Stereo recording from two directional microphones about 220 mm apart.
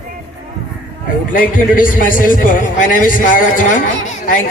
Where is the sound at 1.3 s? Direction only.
40° left (ahead or behind).